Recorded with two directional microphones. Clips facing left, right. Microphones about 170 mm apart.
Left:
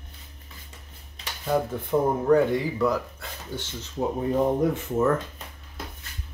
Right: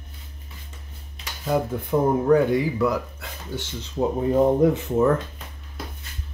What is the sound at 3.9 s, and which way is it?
Speech, 20° right (ahead or behind).